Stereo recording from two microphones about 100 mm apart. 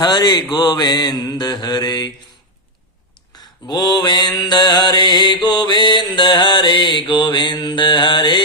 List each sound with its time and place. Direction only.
0.0 s mantra: 45° left (ahead or behind)
3.7 s mantra: 45° left (ahead or behind)